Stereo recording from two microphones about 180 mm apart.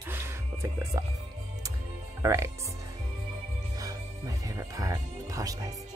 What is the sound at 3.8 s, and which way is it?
Music, 20° right (ahead or behind).